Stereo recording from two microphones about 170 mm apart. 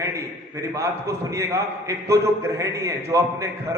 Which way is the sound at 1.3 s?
15° right (ahead or behind).